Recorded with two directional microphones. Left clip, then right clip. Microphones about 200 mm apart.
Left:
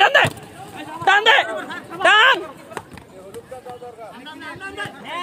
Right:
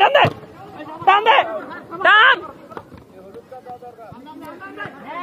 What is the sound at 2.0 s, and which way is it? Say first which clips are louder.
Speech: right 1 dB; 60° left (ahead or behind).